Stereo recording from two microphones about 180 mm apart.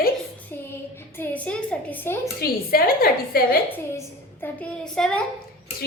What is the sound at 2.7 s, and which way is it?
Speech, 55° left (ahead or behind).